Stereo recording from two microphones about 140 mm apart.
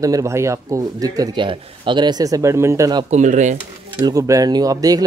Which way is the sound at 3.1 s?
60° right (ahead or behind).